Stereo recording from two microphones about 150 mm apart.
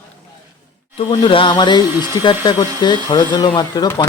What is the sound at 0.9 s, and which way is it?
Speech, 35° left (ahead or behind).